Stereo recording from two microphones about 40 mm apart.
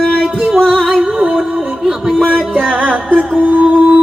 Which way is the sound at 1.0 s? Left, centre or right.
Right.